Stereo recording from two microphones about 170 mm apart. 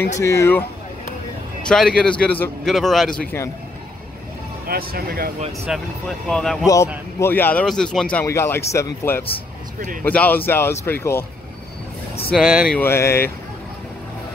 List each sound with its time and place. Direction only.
0.2 s speech: 15° left (ahead or behind)
1.7 s speech: 5° left (ahead or behind)
4.6 s speech: 60° right (ahead or behind)
5.7 s speech: 5° left (ahead or behind)
12.4 s speech: 5° left (ahead or behind)